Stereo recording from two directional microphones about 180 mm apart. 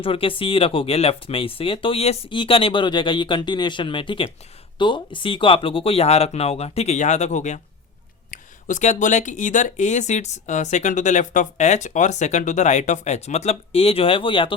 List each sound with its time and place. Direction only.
0.0 s speech: 30° left (ahead or behind)